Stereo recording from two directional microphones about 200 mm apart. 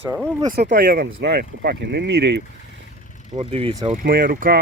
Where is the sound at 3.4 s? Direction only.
25° right (ahead or behind).